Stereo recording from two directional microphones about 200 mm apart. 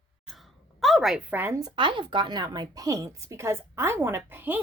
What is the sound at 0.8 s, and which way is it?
A woman's voice, centre (ahead or behind).